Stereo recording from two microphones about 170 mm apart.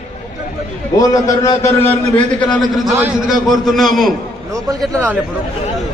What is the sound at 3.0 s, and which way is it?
A man's voice, centre (ahead or behind).